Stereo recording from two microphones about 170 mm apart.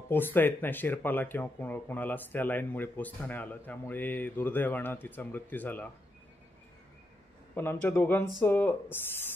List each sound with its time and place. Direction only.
0.1 s speech: 10° left (ahead or behind)
7.5 s speech: 10° left (ahead or behind)